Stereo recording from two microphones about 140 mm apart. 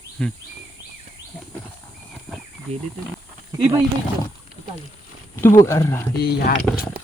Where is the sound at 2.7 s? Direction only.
50° right (ahead or behind).